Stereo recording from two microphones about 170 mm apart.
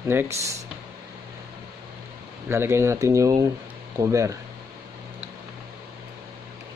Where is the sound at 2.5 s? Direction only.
15° right (ahead or behind).